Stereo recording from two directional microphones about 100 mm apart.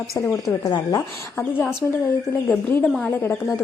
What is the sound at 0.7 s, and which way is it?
Speech, 40° left (ahead or behind).